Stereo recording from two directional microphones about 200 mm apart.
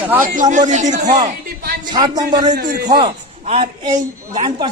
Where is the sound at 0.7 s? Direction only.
35° right (ahead or behind).